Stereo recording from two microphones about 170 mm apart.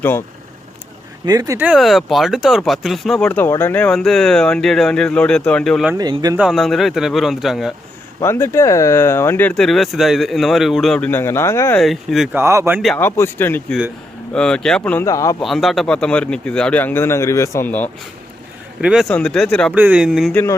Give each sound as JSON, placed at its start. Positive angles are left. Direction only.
{"t": 1.2, "sound": "speech", "side_deg": -20}
{"t": 1.6, "sound": "speech", "side_deg": 0}
{"t": 6.0, "sound": "speech", "side_deg": -25}
{"t": 6.3, "sound": "speech", "side_deg": 0}
{"t": 8.2, "sound": "speech", "side_deg": 15}
{"t": 11.8, "sound": "speech", "side_deg": 0}
{"t": 12.4, "sound": "speech", "side_deg": -15}
{"t": 13.0, "sound": "speech", "side_deg": 15}
{"t": 15.0, "sound": "speech", "side_deg": 20}
{"t": 15.4, "sound": "speech", "side_deg": 0}
{"t": 18.8, "sound": "speech", "side_deg": -5}
{"t": 19.7, "sound": "speech", "side_deg": -10}
{"t": 20.3, "sound": "speech", "side_deg": 15}